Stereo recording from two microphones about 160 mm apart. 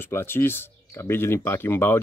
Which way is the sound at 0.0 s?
15° left (ahead or behind).